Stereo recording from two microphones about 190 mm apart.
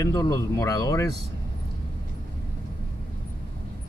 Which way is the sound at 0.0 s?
20° left (ahead or behind).